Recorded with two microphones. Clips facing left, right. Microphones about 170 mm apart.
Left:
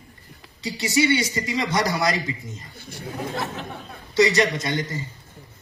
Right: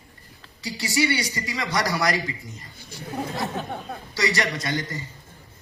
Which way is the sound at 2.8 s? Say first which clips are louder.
Left 2 dB; 60° left (ahead or behind).